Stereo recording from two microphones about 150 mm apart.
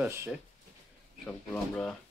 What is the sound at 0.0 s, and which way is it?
Speech, 15° right (ahead or behind).